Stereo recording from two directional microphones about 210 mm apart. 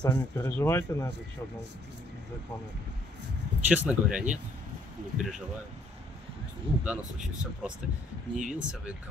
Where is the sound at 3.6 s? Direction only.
5° right (ahead or behind).